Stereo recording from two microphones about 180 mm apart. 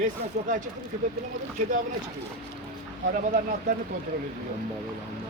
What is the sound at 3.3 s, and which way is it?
Speech, 50° right (ahead or behind).